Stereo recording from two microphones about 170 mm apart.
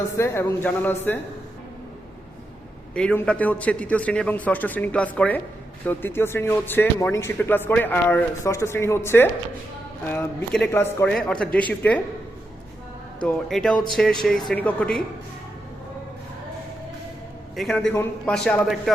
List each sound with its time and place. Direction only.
0.2 s speech: 15° left (ahead or behind)
2.9 s speech: 5° left (ahead or behind)
13.2 s speech: 5° left (ahead or behind)
17.6 s speech: 5° left (ahead or behind)